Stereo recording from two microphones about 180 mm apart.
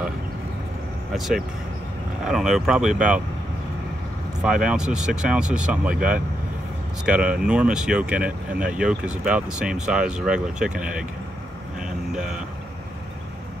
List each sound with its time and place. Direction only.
1.1 s speech: centre (ahead or behind)
4.4 s speech: 5° right (ahead or behind)
11.8 s vehicle: 5° right (ahead or behind)